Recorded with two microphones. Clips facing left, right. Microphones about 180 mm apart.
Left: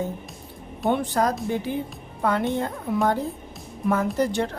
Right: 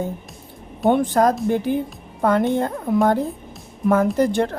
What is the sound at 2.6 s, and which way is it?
A woman's voice, 50° right (ahead or behind).